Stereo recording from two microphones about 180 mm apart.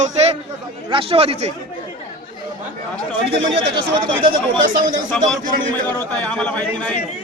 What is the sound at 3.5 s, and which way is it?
Speech, 30° right (ahead or behind).